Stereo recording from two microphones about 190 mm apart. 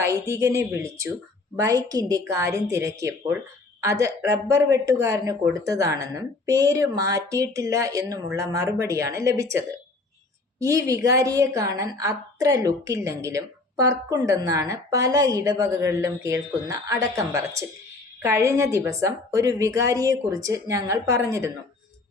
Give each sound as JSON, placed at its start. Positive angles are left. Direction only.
{"t": 0.0, "sound": "a woman's voice", "side_deg": -15}